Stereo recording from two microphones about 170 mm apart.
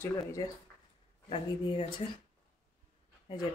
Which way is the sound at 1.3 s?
35° left (ahead or behind).